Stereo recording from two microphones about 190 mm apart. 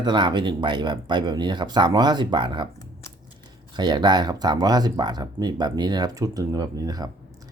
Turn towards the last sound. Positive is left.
turn(degrees=-20)  # may be behind; listen again after turning